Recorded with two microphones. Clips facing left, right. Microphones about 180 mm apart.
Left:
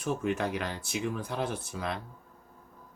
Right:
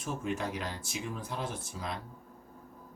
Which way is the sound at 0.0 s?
65° left (ahead or behind).